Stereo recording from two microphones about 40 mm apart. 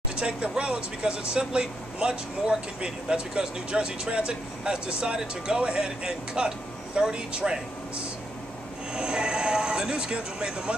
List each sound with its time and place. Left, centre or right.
0.1 s speech: right
8.9 s speech: centre